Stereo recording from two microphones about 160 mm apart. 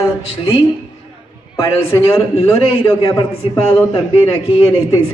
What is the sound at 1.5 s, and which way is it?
A man's voice, 25° left (ahead or behind).